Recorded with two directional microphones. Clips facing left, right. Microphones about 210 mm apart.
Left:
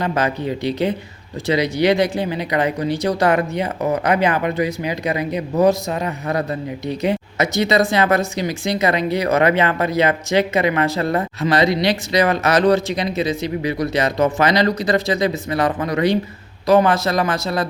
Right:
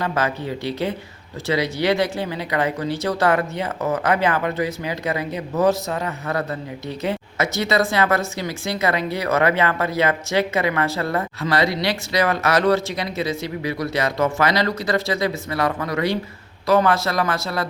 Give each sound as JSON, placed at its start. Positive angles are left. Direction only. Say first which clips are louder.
{"t": 0.0, "sound": "speech", "louder": "left 3 dB", "side_deg": 20}